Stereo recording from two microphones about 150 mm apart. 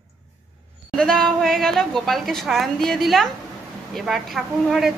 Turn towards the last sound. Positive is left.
turn(degrees=0)  # may be behind; listen again after turning